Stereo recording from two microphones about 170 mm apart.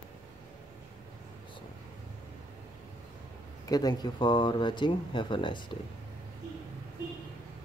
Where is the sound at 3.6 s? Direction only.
25° left (ahead or behind).